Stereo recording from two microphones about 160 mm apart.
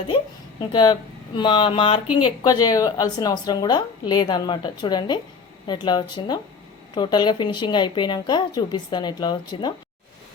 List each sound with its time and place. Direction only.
0.7 s a woman's voice: 25° left (ahead or behind)